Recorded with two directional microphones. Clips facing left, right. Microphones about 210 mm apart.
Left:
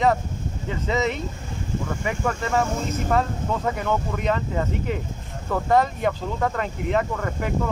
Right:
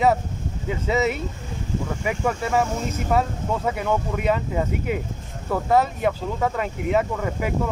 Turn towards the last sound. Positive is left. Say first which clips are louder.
# right 2 dB
turn(degrees=-5)  # may be behind; listen again after turning